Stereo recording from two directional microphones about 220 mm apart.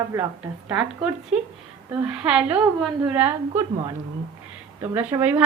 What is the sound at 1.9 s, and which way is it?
A woman's voice, 5° right (ahead or behind).